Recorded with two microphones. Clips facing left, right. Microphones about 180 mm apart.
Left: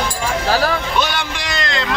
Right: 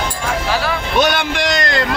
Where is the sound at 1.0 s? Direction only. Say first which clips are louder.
Right 5 dB; 50° right (ahead or behind).